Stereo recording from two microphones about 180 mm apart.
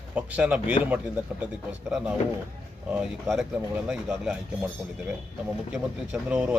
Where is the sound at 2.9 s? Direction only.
Centre (ahead or behind).